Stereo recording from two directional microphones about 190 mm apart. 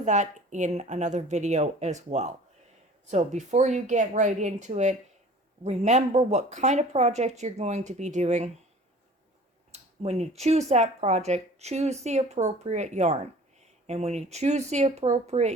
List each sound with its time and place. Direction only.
0.0 s speech: 40° right (ahead or behind)
9.7 s speech: 35° right (ahead or behind)